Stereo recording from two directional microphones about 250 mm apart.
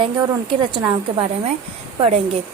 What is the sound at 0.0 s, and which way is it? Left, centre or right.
Speech, centre.